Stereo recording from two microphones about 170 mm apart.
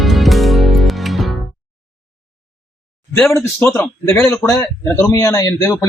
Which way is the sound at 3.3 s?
15° left (ahead or behind).